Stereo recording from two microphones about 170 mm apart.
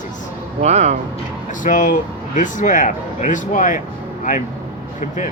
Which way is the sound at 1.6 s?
50° left (ahead or behind).